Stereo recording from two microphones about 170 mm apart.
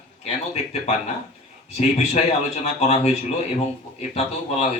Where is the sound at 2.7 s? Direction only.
40° left (ahead or behind).